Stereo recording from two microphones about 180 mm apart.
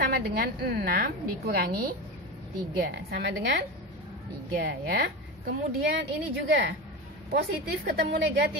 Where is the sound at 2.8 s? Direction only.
60° right (ahead or behind).